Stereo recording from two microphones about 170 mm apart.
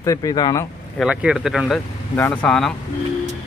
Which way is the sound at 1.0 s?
5° right (ahead or behind).